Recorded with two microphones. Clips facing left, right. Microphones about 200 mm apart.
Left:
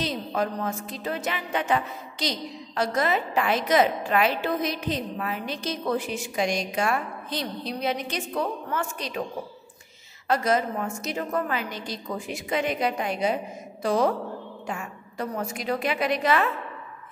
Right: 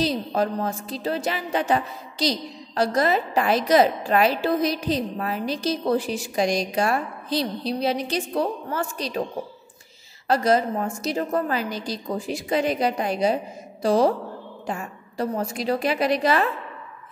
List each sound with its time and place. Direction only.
0.0 s a woman's voice: 35° right (ahead or behind)
10.2 s a woman's voice: 35° right (ahead or behind)